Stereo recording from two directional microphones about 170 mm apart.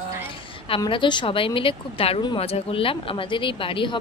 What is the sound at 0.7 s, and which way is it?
A woman's voice, 30° left (ahead or behind).